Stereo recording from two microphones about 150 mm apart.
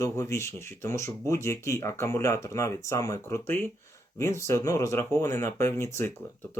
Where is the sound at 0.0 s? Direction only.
20° left (ahead or behind).